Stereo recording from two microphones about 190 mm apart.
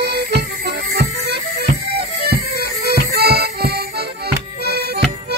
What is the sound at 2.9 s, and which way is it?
Music, 55° right (ahead or behind).